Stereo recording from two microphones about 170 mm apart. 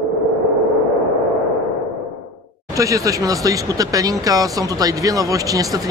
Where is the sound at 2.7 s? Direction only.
20° right (ahead or behind).